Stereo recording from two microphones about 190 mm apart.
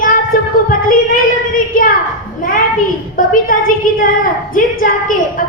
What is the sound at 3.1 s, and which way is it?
A woman's voice, 45° left (ahead or behind).